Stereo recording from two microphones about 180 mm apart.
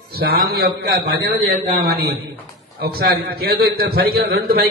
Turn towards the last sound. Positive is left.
turn(degrees=-55)  # may be behind; listen again after turning